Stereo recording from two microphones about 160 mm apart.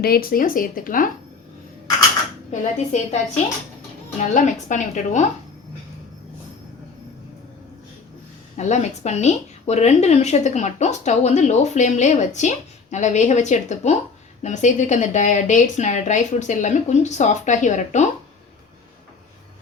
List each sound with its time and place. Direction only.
0.0 s speech: 65° left (ahead or behind)
2.5 s a woman's voice: 45° left (ahead or behind)
8.5 s a woman's voice: 45° left (ahead or behind)